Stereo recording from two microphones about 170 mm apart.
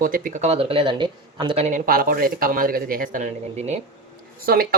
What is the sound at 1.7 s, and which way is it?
Speech, 55° right (ahead or behind).